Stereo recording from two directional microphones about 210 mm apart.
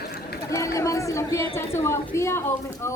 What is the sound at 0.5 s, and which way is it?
A woman's voice, 15° left (ahead or behind).